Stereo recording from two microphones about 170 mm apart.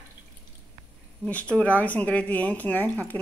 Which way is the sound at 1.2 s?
10° left (ahead or behind).